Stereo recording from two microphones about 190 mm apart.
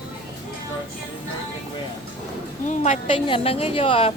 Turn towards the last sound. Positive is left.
turn(degrees=30)  # may be behind; listen again after turning